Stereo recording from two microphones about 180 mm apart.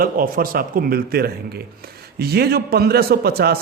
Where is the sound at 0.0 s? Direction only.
55° right (ahead or behind).